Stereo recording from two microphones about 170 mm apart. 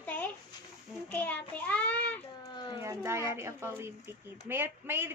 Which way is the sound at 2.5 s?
25° left (ahead or behind).